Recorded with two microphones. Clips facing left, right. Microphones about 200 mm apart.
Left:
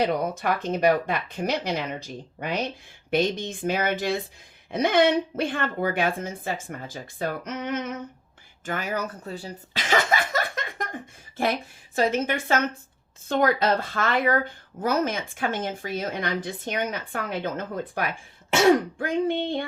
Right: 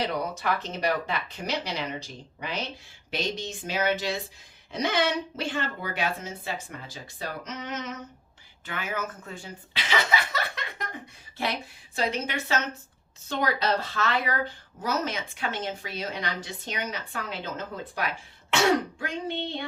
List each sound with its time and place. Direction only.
0.0 s a woman's voice: 50° left (ahead or behind)
8.6 s speech: 40° left (ahead or behind)